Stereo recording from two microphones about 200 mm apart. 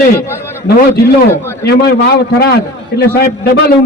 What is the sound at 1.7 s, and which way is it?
A man's voice, 55° left (ahead or behind).